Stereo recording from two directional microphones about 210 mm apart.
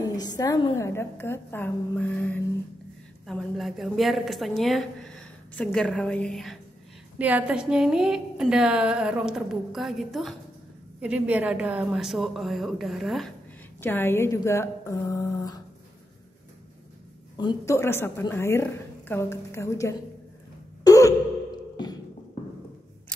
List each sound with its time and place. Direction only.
0.1 s a woman's voice: 20° left (ahead or behind); by 13.3 s centre (ahead or behind)
13.7 s a woman's voice: 10° left (ahead or behind)
17.4 s a woman's voice: 15° left (ahead or behind)
20.8 s sigh: 15° left (ahead or behind)